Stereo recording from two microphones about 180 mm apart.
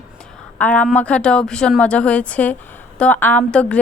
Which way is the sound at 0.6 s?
10° left (ahead or behind).